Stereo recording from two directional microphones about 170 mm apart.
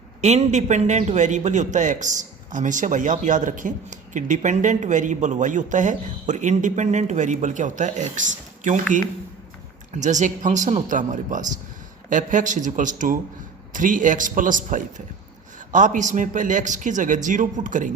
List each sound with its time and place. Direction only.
0.2 s speech: 45° right (ahead or behind)
10.0 s speech: 45° right (ahead or behind)